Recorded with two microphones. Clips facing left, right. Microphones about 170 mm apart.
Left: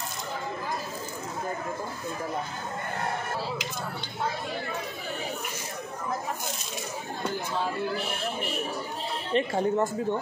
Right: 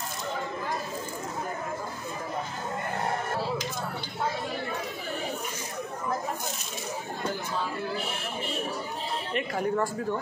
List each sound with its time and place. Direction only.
9.3 s speech: 25° left (ahead or behind)